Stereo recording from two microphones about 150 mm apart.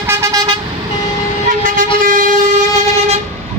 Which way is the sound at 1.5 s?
65° right (ahead or behind).